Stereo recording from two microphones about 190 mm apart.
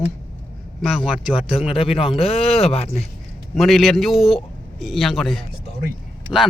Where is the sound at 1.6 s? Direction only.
30° left (ahead or behind).